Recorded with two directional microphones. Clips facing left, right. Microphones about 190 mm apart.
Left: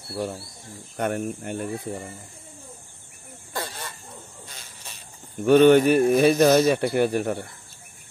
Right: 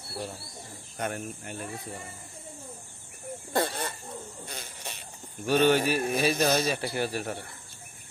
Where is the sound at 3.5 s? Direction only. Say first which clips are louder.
Right 5 dB; 50° right (ahead or behind).